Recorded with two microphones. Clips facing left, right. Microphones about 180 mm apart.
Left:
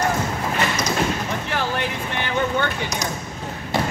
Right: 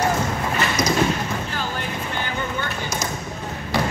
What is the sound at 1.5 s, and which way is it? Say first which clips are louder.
Vehicle: left 4 dB; 70° left (ahead or behind).